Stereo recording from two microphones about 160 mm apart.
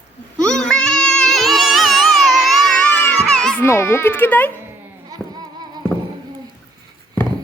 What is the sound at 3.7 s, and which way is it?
Speech, 15° left (ahead or behind).